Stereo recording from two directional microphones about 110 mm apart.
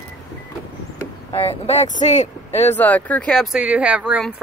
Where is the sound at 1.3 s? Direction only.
60° left (ahead or behind); by 2.3 s 90° left.